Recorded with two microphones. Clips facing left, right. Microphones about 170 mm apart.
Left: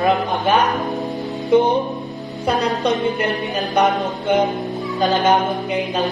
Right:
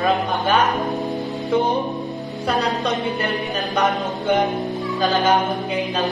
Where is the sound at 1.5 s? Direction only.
20° left (ahead or behind).